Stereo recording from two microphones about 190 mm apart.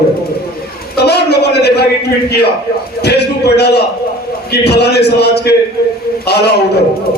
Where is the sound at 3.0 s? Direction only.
60° left (ahead or behind).